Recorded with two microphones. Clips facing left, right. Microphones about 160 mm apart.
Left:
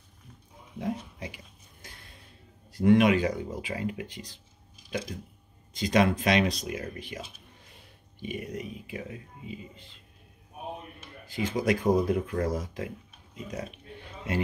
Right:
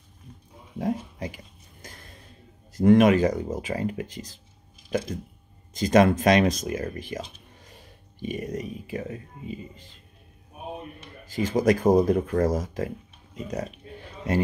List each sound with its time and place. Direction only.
0.7 s a sound: 45° right (ahead or behind)
2.7 s speech: 45° right (ahead or behind)
11.2 s speech: 40° right (ahead or behind)